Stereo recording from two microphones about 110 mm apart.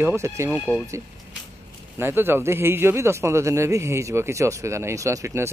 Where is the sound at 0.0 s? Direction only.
25° right (ahead or behind).